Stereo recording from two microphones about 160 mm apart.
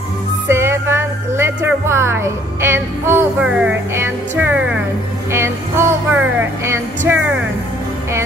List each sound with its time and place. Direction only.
0.5 s speech: 15° right (ahead or behind)
5.3 s music: 15° right (ahead or behind)